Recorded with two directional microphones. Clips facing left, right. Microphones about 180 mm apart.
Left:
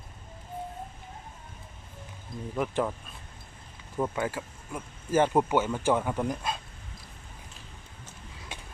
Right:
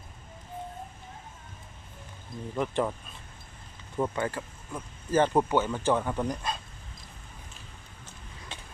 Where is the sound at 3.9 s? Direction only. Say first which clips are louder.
Even; centre (ahead or behind).